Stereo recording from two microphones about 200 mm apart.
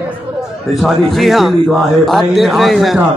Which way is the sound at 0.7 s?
Centre (ahead or behind).